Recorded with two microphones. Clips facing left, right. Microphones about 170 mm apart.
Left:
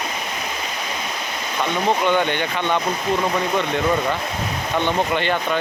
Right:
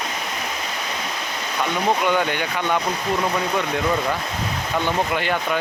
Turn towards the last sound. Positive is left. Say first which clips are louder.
# left 2 dB
turn(degrees=-5)  # may be behind; listen again after turning